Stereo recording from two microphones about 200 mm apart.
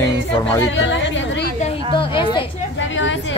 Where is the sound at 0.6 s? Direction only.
65° left (ahead or behind).